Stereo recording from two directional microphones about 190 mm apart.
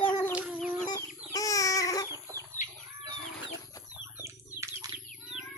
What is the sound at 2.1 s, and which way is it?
Chicken, 15° right (ahead or behind).